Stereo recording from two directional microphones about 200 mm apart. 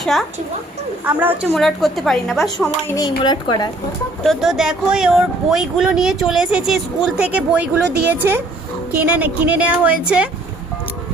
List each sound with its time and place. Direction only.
0.0 s speech: centre (ahead or behind)
1.2 s a woman's voice: 10° right (ahead or behind)
1.5 s speech: centre (ahead or behind)
2.9 s speech: 20° left (ahead or behind)
4.2 s a woman's voice: centre (ahead or behind)